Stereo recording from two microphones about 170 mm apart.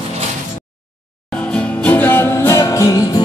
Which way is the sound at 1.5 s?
5° left (ahead or behind).